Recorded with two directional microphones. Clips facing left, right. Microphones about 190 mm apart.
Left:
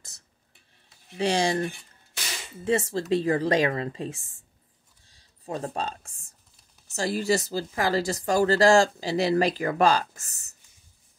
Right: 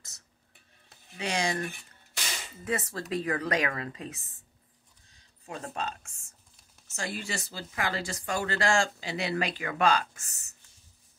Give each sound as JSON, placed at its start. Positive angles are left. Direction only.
{"t": 1.1, "sound": "speech", "side_deg": 30}
{"t": 5.0, "sound": "a sound", "side_deg": 35}
{"t": 6.9, "sound": "speech", "side_deg": 35}